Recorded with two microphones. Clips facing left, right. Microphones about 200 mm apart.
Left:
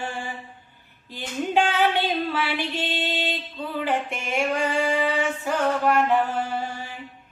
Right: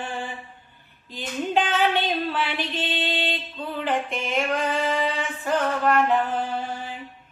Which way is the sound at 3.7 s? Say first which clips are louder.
Even; 10° left (ahead or behind).